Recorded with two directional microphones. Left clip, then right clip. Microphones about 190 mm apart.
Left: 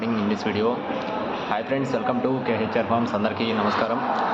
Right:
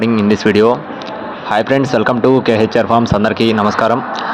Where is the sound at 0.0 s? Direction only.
45° right (ahead or behind).